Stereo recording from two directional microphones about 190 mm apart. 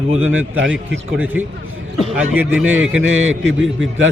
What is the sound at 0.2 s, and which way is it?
Speech, 90° right.